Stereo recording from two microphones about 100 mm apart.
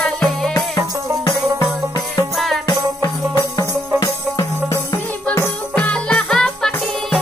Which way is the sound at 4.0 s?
35° left (ahead or behind).